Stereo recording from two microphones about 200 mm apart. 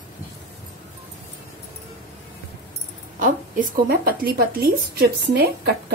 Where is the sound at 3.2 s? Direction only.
45° right (ahead or behind).